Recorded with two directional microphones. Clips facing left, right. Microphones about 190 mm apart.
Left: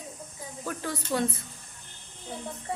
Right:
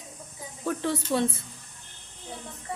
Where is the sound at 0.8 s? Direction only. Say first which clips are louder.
Right 3 dB; 25° right (ahead or behind).